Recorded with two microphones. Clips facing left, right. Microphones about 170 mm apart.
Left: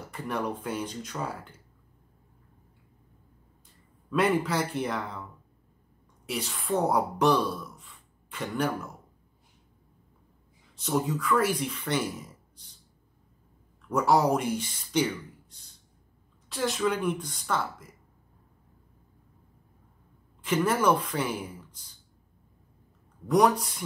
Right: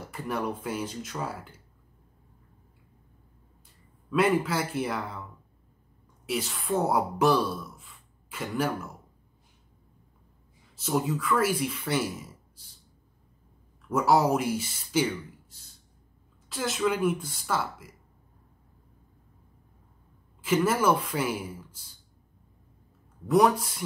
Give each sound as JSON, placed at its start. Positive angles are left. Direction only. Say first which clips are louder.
{"t": 0.1, "sound": "speech", "louder": "even", "side_deg": 0}
{"t": 4.1, "sound": "speech", "louder": "right 1 dB", "side_deg": 0}
{"t": 6.2, "sound": "a woman's voice", "louder": "right 2 dB", "side_deg": 0}
{"t": 10.8, "sound": "speech", "louder": "even", "side_deg": -5}
{"t": 13.8, "sound": "speech", "louder": "even", "side_deg": 0}
{"t": 16.4, "sound": "speech", "louder": "even", "side_deg": 0}
{"t": 20.4, "sound": "speech", "louder": "right 1 dB", "side_deg": -5}
{"t": 23.2, "sound": "speech", "louder": "right 1 dB", "side_deg": 0}